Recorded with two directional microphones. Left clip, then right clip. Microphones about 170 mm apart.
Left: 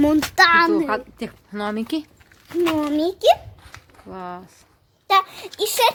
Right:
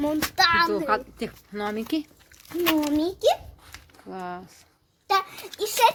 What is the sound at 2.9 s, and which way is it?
Speech, 35° left (ahead or behind).